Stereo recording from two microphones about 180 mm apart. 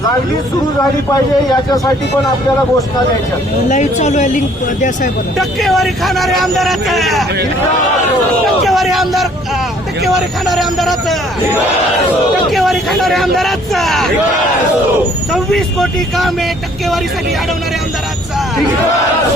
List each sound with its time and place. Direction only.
3.7 s speech: 40° left (ahead or behind)
5.4 s speech: centre (ahead or behind)
8.6 s speech: centre (ahead or behind)
12.5 s speech: centre (ahead or behind)
15.3 s speech: centre (ahead or behind)